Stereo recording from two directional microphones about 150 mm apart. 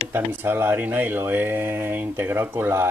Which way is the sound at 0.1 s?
15° right (ahead or behind).